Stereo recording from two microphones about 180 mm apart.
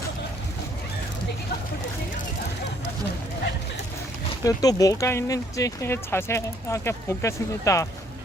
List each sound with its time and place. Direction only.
4.4 s speech: 20° left (ahead or behind)